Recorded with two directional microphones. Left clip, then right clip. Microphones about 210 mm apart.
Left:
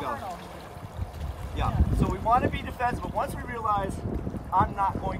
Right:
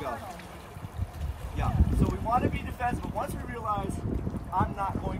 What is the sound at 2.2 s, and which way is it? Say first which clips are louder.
Speech: left 5 dB; 5° left (ahead or behind).